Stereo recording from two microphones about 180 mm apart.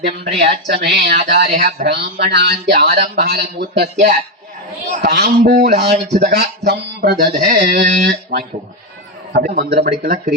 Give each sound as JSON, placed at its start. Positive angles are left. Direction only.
{"t": 0.3, "sound": "speech", "side_deg": -65}
{"t": 9.6, "sound": "speech", "side_deg": -60}